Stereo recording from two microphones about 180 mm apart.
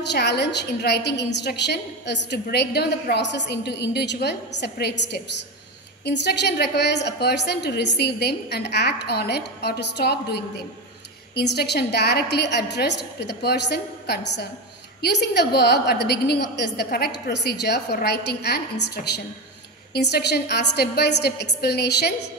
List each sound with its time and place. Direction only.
0.0 s a woman's voice: 70° left (ahead or behind)
19.9 s a woman's voice: 65° left (ahead or behind)